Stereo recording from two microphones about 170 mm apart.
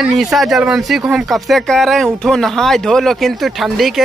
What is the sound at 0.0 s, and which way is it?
Speech, centre (ahead or behind).